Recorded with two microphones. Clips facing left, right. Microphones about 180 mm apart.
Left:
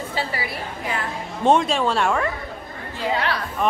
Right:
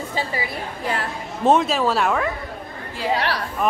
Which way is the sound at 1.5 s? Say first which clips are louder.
Right 1 dB; centre (ahead or behind).